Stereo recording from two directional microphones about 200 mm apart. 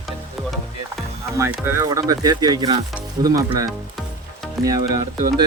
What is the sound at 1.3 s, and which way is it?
Speech, 15° right (ahead or behind).